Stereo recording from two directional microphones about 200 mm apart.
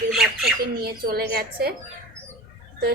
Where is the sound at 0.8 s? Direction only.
50° right (ahead or behind).